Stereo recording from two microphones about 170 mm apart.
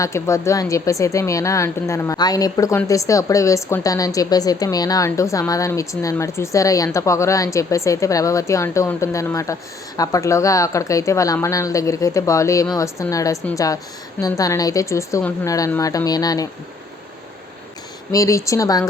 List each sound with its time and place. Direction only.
0.0 s a woman's voice: 20° left (ahead or behind)
18.1 s a woman's voice: 20° left (ahead or behind)